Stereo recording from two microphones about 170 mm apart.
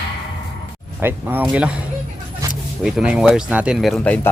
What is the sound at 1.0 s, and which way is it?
Speech, 10° right (ahead or behind).